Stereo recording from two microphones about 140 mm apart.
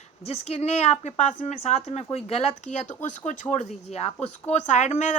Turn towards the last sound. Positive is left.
turn(degrees=55)  # may be behind; listen again after turning